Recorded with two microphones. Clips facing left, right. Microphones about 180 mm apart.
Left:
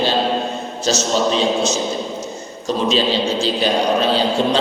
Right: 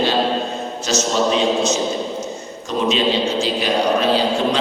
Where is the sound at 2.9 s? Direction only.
30° left (ahead or behind).